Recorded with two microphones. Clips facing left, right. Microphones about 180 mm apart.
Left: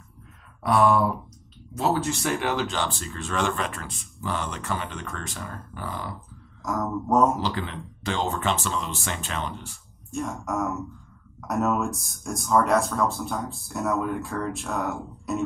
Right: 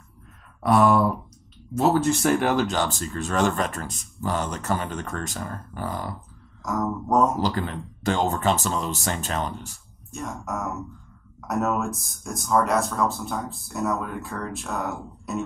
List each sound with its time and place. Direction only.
0.6 s speech: 45° right (ahead or behind)
6.6 s speech: centre (ahead or behind)
7.3 s speech: 45° right (ahead or behind)
10.1 s speech: centre (ahead or behind)